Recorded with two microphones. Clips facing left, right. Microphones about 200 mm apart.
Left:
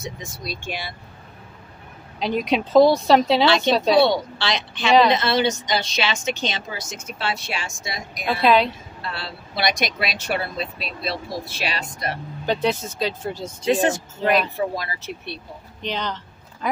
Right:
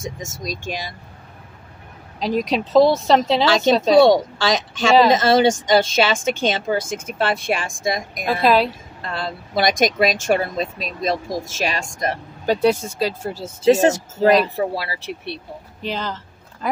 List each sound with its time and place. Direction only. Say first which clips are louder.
0.0 s speech: right 3 dB; 45° right (ahead or behind)
2.1 s speech: right 1 dB; centre (ahead or behind)
3.9 s speech: right 7 dB; 45° right (ahead or behind)
8.5 s speech: right 1 dB; 5° right (ahead or behind)
9.0 s speech: right 6 dB; 50° right (ahead or behind)
12.4 s speech: right 5 dB; 10° right (ahead or behind)
13.7 s speech: right 6 dB; 40° right (ahead or behind)
15.8 s speech: right 1 dB; 5° right (ahead or behind)